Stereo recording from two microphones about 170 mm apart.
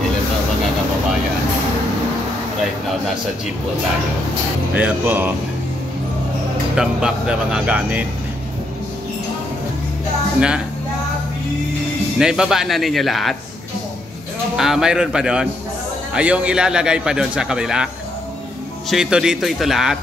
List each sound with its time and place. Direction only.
4.7 s speech: 10° right (ahead or behind)
6.7 s a man's voice: 5° right (ahead or behind)
12.2 s a man's voice: 5° right (ahead or behind)
14.6 s a man's voice: 5° right (ahead or behind)
18.9 s a man's voice: 5° right (ahead or behind)